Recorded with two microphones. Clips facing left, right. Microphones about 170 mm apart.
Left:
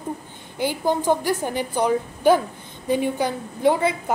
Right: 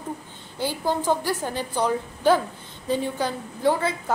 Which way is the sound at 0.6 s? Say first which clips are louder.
Left 3 dB; 15° left (ahead or behind).